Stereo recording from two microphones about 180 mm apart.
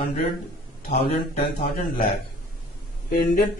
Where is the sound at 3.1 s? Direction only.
55° left (ahead or behind).